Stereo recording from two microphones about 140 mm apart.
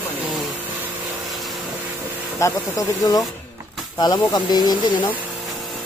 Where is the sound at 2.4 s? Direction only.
25° left (ahead or behind).